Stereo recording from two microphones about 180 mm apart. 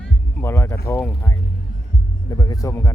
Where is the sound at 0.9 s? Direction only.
15° left (ahead or behind).